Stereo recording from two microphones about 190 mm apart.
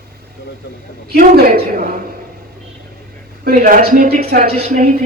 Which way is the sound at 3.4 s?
50° right (ahead or behind).